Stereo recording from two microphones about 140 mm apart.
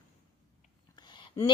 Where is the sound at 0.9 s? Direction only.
35° left (ahead or behind).